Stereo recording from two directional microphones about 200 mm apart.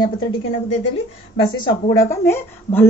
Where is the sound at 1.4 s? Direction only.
20° left (ahead or behind).